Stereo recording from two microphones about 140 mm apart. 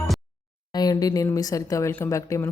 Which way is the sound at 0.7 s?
25° left (ahead or behind).